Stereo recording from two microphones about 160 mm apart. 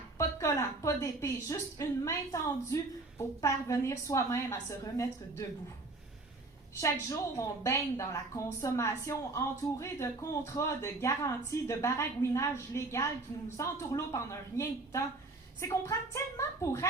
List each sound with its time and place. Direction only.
0.2 s a woman's voice: 20° left (ahead or behind)
6.7 s a woman's voice: 20° left (ahead or behind)